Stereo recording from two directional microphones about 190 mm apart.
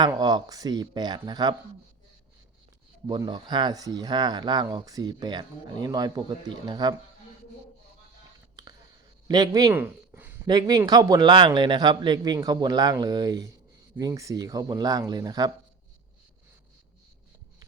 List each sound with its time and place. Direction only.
0.0 s a man's voice: 20° right (ahead or behind)
3.1 s a man's voice: 25° right (ahead or behind)
8.6 s a sound: 20° right (ahead or behind)
9.2 s a man's voice: 20° right (ahead or behind)
10.4 s a man's voice: 20° right (ahead or behind)